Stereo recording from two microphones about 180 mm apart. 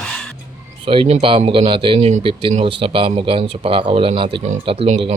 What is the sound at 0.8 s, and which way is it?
A man's voice, 30° right (ahead or behind).